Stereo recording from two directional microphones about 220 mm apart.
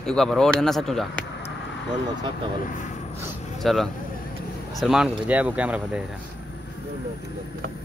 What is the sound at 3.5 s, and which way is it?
Speech, centre (ahead or behind).